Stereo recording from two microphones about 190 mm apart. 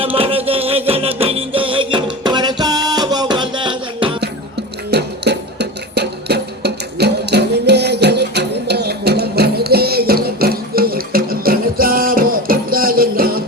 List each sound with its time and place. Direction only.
0.0 s music: 30° right (ahead or behind)
4.9 s music: 60° right (ahead or behind)